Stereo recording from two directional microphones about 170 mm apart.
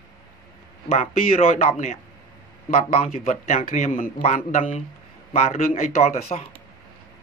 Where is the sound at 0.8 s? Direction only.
35° left (ahead or behind).